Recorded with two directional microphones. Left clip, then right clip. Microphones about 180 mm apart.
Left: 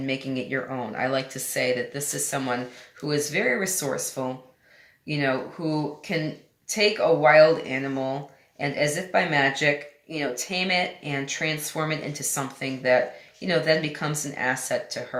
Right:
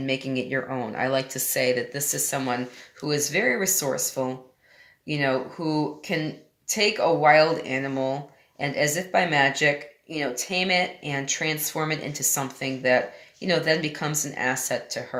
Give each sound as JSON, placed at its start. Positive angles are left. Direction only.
{"t": 0.0, "sound": "speech", "side_deg": -40}